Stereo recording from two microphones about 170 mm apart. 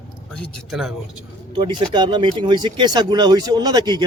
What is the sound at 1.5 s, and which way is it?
Speech, 25° right (ahead or behind).